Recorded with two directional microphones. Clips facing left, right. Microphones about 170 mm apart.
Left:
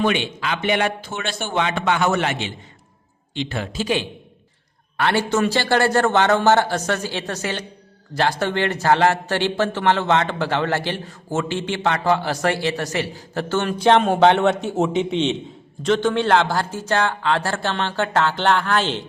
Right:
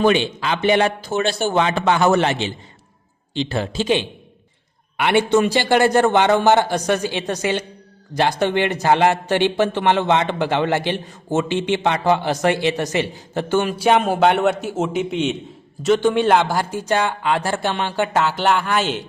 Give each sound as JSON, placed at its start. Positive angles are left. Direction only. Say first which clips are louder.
{"t": 0.0, "sound": "a man's voice", "louder": "right 4 dB", "side_deg": -35}